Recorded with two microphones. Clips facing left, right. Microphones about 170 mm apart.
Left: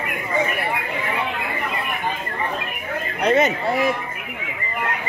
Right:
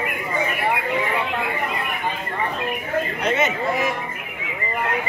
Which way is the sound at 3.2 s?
35° left (ahead or behind).